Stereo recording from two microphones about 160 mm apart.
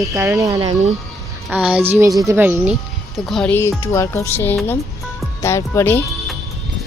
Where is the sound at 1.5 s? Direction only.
5° right (ahead or behind).